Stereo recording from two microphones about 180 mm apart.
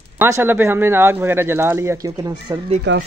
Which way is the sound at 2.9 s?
80° right.